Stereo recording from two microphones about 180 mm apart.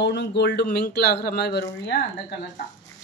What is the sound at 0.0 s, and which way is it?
Speech, 70° left (ahead or behind).